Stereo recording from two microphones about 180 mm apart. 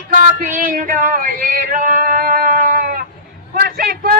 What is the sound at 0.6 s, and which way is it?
Music, 50° right (ahead or behind).